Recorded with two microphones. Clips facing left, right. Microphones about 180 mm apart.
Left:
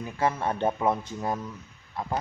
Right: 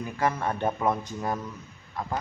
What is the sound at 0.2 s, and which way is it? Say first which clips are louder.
Speech: left 1 dB; 20° left (ahead or behind).